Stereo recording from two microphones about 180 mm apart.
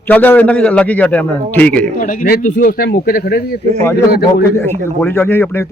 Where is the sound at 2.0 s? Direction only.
50° left (ahead or behind).